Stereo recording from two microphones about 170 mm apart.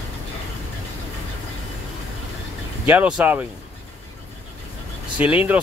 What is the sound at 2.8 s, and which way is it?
Speech, 10° right (ahead or behind).